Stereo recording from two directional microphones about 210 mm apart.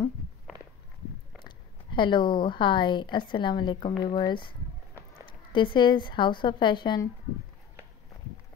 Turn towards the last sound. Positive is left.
turn(degrees=20)  # may be behind; listen again after turning